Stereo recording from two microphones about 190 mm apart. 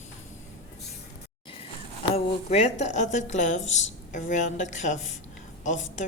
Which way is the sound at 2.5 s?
35° left (ahead or behind).